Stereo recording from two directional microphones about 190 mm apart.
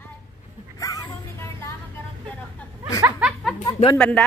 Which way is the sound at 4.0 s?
5° left (ahead or behind).